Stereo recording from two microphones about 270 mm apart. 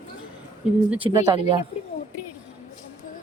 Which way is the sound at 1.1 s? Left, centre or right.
Centre.